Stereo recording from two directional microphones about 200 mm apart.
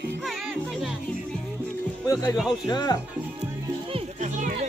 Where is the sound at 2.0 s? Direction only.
15° left (ahead or behind).